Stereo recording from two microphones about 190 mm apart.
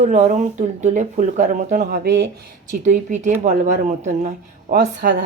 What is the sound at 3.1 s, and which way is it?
Speech, 40° right (ahead or behind).